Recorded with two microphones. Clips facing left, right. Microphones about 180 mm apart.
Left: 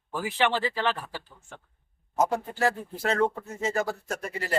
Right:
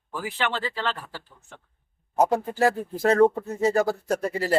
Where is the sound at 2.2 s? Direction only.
35° right (ahead or behind).